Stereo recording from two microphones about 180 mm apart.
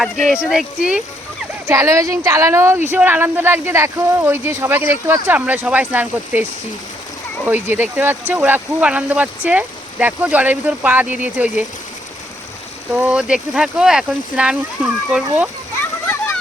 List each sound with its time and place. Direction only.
0.0 s speech: centre (ahead or behind)
1.6 s speech: 15° right (ahead or behind)
7.4 s speech: 10° right (ahead or behind)
12.9 s speech: 5° right (ahead or behind)